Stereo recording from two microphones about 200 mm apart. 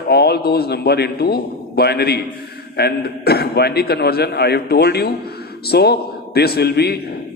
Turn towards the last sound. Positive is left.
turn(degrees=50)  # may be behind; listen again after turning